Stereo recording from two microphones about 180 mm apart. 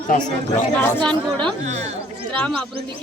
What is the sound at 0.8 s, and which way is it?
Speech, 5° left (ahead or behind).